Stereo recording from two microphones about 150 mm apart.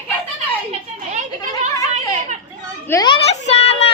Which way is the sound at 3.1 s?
40° left (ahead or behind).